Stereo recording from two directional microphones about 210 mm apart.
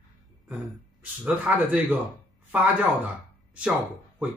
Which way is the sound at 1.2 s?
5° right (ahead or behind).